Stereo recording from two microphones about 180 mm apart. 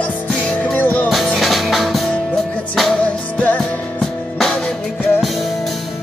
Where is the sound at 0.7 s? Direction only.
10° left (ahead or behind).